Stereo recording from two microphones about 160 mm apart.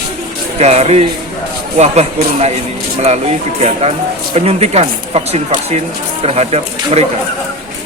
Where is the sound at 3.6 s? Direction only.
40° right (ahead or behind).